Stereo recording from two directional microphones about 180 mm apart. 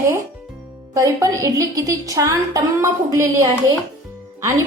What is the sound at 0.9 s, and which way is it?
A woman's voice, 20° right (ahead or behind).